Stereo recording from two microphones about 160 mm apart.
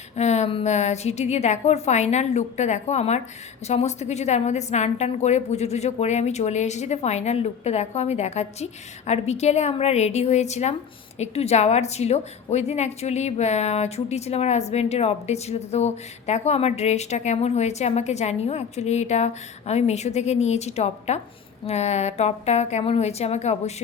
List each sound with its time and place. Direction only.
0.2 s a woman's voice: 45° left (ahead or behind)